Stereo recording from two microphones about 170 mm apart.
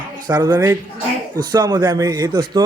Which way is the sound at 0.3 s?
15° right (ahead or behind).